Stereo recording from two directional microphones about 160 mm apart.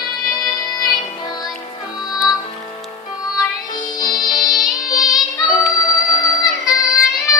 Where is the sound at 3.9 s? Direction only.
25° left (ahead or behind).